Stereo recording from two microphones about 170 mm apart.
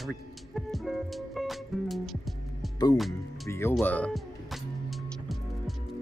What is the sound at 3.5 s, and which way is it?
Speech, 15° left (ahead or behind).